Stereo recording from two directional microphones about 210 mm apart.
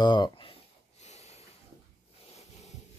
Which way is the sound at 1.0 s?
30° left (ahead or behind).